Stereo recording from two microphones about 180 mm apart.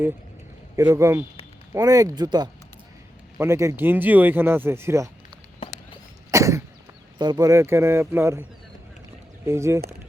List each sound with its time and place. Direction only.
0.8 s speech: 15° right (ahead or behind)
6.3 s cough: 15° right (ahead or behind)
7.2 s speech: 20° right (ahead or behind)
9.5 s speech: 15° right (ahead or behind)